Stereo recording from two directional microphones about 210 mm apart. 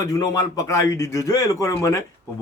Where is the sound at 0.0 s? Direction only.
15° left (ahead or behind).